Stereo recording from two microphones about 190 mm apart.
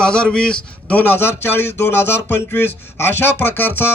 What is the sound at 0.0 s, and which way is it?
A man's voice, 5° left (ahead or behind).